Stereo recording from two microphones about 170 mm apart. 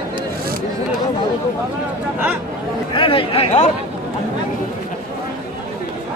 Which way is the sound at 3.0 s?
30° left (ahead or behind).